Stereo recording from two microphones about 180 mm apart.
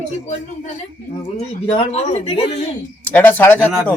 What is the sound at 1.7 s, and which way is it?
Speech, 35° left (ahead or behind).